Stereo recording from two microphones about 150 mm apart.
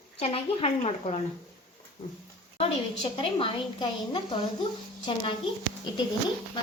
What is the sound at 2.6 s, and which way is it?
A woman's voice, 40° left (ahead or behind).